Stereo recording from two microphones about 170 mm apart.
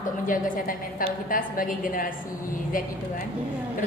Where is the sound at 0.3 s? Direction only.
55° left (ahead or behind).